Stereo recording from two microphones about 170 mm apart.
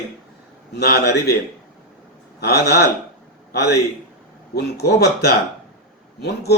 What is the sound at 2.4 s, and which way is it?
Speech, 75° left (ahead or behind).